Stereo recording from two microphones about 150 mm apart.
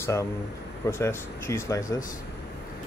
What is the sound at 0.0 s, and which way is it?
Speech, 20° left (ahead or behind).